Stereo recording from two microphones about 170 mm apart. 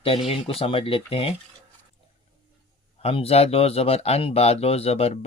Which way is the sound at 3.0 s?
35° left (ahead or behind).